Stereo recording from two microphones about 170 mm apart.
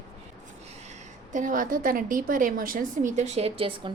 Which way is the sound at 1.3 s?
50° right (ahead or behind).